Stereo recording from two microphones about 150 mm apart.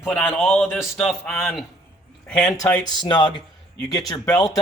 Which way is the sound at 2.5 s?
20° left (ahead or behind).